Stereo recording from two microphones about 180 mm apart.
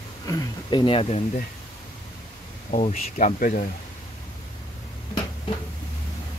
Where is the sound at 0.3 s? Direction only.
20° left (ahead or behind).